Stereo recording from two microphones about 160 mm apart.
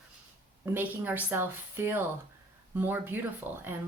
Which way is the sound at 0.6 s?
10° right (ahead or behind).